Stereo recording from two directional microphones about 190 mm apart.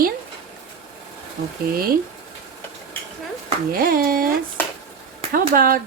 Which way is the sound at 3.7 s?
50° right (ahead or behind).